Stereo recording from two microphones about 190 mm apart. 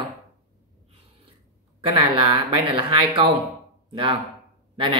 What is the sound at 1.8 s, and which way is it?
Speech, 30° right (ahead or behind).